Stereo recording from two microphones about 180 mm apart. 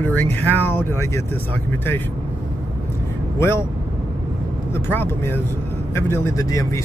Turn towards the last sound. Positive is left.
turn(degrees=20)  # may be behind; listen again after turning